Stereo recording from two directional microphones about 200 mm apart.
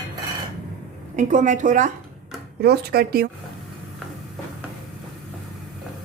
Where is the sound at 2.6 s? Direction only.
50° right (ahead or behind).